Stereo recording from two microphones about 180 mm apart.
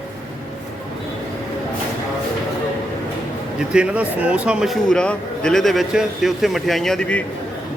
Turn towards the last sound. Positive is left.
turn(degrees=0)  # may be behind; listen again after turning